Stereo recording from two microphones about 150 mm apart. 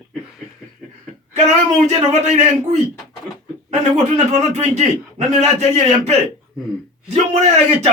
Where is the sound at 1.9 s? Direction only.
50° right (ahead or behind).